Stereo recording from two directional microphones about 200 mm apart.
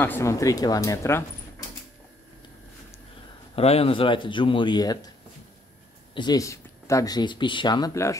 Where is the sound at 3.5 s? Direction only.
30° left (ahead or behind).